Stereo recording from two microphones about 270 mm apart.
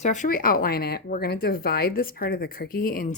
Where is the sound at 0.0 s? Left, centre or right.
Left.